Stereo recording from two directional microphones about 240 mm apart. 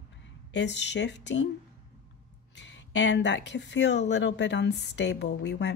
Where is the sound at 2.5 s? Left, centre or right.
Left.